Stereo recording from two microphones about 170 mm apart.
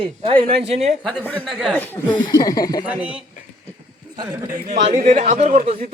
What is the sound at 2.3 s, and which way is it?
Speech, 20° left (ahead or behind).